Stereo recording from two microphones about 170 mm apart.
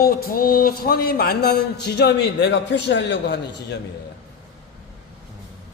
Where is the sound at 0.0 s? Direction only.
60° left (ahead or behind); by 3.8 s 90° left.